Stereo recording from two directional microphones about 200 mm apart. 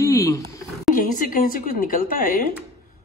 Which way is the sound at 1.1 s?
40° left (ahead or behind).